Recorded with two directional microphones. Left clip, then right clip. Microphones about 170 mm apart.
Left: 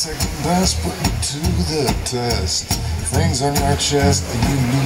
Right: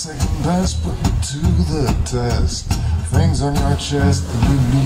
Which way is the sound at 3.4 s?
15° left (ahead or behind).